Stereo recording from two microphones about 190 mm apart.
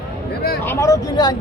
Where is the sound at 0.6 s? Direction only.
15° left (ahead or behind).